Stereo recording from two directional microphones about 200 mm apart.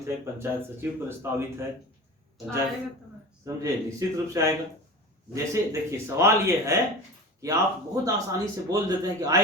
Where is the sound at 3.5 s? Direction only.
15° right (ahead or behind).